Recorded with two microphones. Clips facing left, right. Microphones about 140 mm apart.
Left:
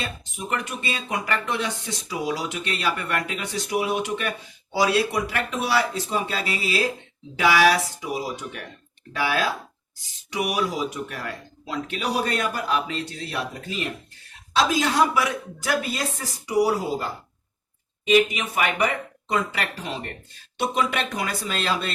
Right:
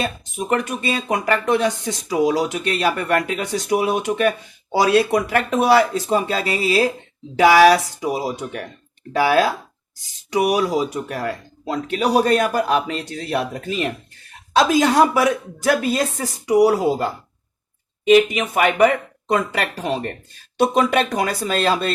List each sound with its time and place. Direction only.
0.0 s speech: 45° right (ahead or behind)
18.1 s speech: 50° right (ahead or behind)